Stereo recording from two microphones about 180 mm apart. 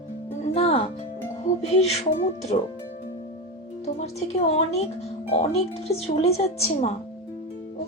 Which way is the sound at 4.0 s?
40° left (ahead or behind).